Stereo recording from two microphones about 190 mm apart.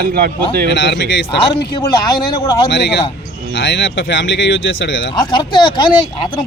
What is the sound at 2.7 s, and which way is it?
Speech, 65° left (ahead or behind).